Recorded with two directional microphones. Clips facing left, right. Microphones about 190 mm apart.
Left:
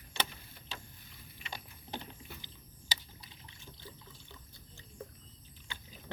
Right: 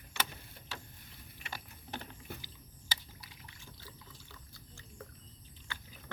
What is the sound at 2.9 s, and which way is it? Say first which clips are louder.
Liquid: even; 25° left (ahead or behind).